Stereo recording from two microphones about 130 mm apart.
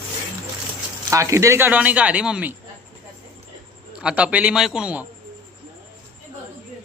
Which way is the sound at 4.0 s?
10° right (ahead or behind).